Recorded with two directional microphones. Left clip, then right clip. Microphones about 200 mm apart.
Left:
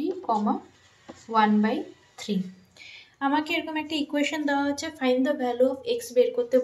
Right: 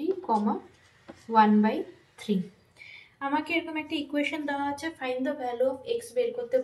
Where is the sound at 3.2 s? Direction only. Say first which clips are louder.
Left 3 dB; 45° left (ahead or behind); by 6.6 s 65° left (ahead or behind).